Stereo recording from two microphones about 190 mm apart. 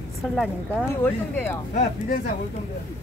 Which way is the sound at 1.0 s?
10° left (ahead or behind).